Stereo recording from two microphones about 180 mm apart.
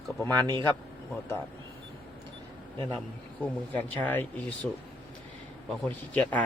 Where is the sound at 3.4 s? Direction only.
10° left (ahead or behind).